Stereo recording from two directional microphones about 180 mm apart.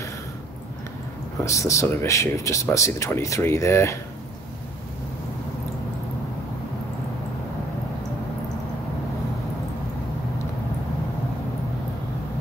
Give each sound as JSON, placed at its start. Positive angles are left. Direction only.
{"t": 1.4, "sound": "speech", "side_deg": 15}